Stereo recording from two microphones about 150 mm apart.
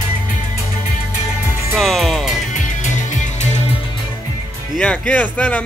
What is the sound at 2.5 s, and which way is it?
Music, 55° left (ahead or behind).